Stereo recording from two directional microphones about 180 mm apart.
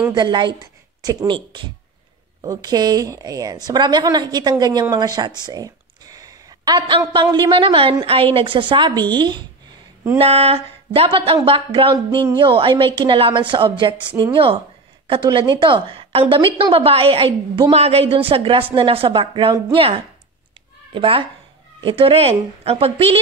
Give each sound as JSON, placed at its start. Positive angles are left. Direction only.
{"t": 0.1, "sound": "a woman's voice", "side_deg": -25}